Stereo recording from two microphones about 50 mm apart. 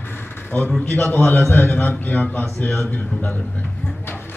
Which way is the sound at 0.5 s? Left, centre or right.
Left.